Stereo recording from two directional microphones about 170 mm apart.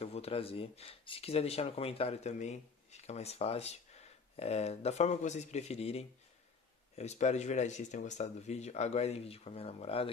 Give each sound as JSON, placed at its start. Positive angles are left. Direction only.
{"t": 0.0, "sound": "speech", "side_deg": 35}